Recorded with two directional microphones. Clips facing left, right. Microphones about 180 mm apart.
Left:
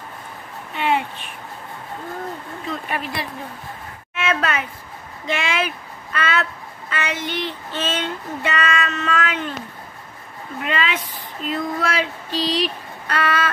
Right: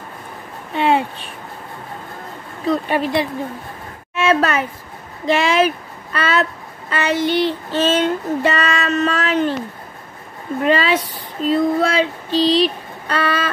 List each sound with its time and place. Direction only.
0.7 s a child's voice: 30° right (ahead or behind)
2.7 s a woman's voice: 25° right (ahead or behind)
10.6 s speech: 35° right (ahead or behind)